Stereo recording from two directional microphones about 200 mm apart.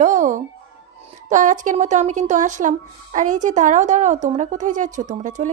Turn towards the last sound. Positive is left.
turn(degrees=-40)  # may be behind; listen again after turning